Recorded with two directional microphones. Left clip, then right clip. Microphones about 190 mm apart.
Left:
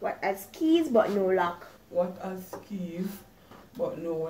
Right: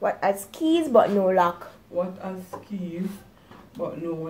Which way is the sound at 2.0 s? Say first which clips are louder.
Right 1 dB; 5° left (ahead or behind).